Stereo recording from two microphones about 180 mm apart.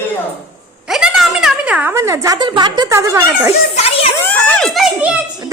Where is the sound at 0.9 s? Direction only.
Centre (ahead or behind).